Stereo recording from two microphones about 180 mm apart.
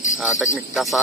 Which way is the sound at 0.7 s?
Centre (ahead or behind).